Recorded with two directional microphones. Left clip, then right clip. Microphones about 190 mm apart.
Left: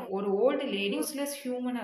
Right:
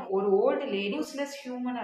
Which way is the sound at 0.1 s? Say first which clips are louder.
Right 3 dB; 40° left (ahead or behind).